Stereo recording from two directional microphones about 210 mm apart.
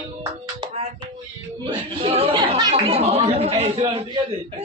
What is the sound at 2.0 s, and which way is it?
Chatter, 25° right (ahead or behind).